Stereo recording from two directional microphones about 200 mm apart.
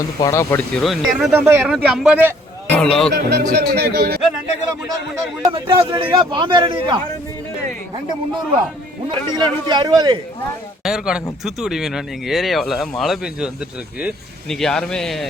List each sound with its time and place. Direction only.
0.2 s speech: 15° left (ahead or behind)
0.7 s speech: centre (ahead or behind)
1.3 s a man's voice: 10° right (ahead or behind)
2.7 s speech: 5° left (ahead or behind)
3.1 s speech: 50° right (ahead or behind)
5.4 s a man's voice: 25° right (ahead or behind)
9.0 s a man's voice: 20° right (ahead or behind)
10.8 s speech: centre (ahead or behind)